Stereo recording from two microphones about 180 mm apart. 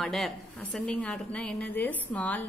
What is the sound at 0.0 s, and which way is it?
A woman's voice, centre (ahead or behind).